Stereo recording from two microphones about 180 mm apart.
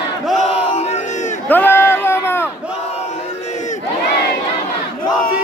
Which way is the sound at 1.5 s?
10° left (ahead or behind).